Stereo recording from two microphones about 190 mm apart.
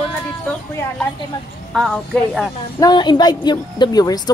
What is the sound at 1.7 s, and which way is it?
Speech, centre (ahead or behind).